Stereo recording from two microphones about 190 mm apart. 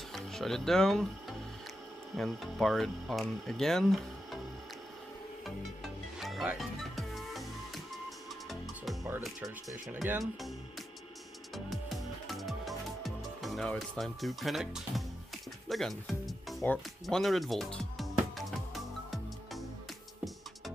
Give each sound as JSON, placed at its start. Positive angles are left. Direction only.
{"t": 0.1, "sound": "speech", "side_deg": 0}
{"t": 2.1, "sound": "speech", "side_deg": 0}
{"t": 6.1, "sound": "music", "side_deg": 0}
{"t": 10.0, "sound": "speech", "side_deg": 0}
{"t": 12.3, "sound": "music", "side_deg": 0}
{"t": 15.7, "sound": "speech", "side_deg": 0}
{"t": 19.0, "sound": "music", "side_deg": 0}